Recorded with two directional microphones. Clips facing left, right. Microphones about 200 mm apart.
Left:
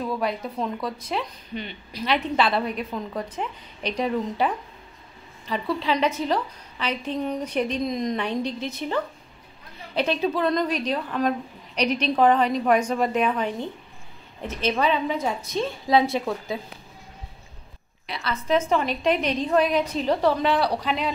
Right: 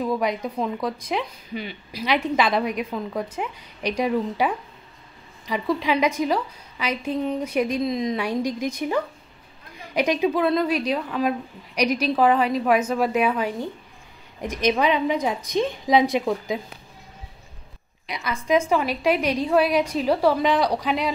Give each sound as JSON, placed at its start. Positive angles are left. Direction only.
{"t": 0.0, "sound": "a woman's voice", "side_deg": -15}
{"t": 18.1, "sound": "a woman's voice", "side_deg": -15}